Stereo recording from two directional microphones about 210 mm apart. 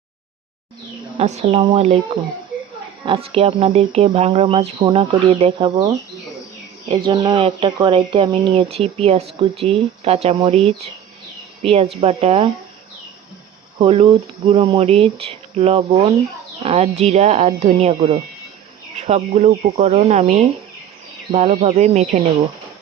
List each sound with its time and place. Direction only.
1.2 s speech: 30° right (ahead or behind)
3.1 s speech: 25° right (ahead or behind)
13.7 s speech: 25° right (ahead or behind)